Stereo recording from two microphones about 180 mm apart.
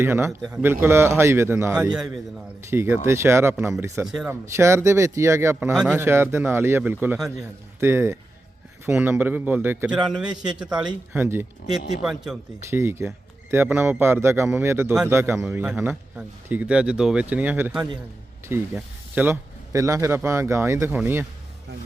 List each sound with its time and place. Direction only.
0.0 s speech: 15° right (ahead or behind)
0.3 s speech: centre (ahead or behind)
4.0 s speech: 5° right (ahead or behind)
4.3 s speech: 15° right (ahead or behind)
12.7 s speech: 15° right (ahead or behind)